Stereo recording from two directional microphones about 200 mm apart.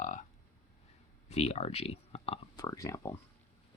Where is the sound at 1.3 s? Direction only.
30° left (ahead or behind).